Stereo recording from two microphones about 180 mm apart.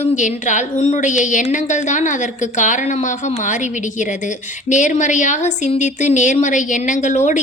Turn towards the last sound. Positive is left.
turn(degrees=40)  # may be behind; listen again after turning